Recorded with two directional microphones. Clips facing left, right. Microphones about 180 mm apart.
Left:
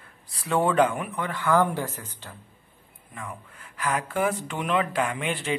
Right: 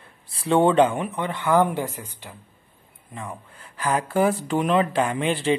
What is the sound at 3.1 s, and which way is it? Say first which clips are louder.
A woman's voice: right 3 dB; 30° right (ahead or behind).